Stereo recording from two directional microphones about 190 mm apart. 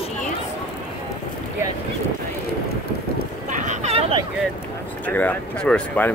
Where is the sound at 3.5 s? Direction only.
40° right (ahead or behind).